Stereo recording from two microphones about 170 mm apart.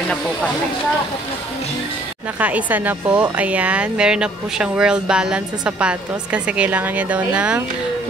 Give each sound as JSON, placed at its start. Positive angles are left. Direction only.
{"t": 2.4, "sound": "a woman's voice", "side_deg": -10}